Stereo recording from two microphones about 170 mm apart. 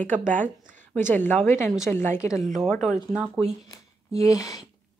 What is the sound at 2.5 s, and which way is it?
Speech, centre (ahead or behind).